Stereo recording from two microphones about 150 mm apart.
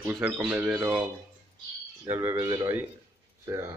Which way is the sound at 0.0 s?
10° right (ahead or behind).